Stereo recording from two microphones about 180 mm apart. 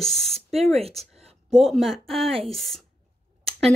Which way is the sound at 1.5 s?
Centre (ahead or behind).